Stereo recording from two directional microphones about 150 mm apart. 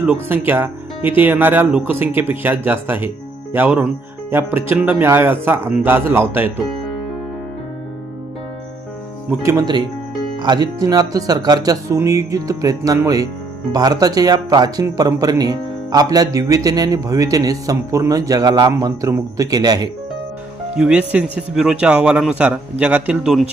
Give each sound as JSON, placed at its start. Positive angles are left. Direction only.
{"t": 0.0, "sound": "speech", "side_deg": -10}
{"t": 9.4, "sound": "speech", "side_deg": -20}
{"t": 20.7, "sound": "speech", "side_deg": -5}